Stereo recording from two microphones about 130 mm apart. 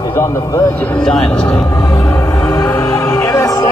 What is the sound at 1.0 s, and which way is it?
Speech, 5° left (ahead or behind).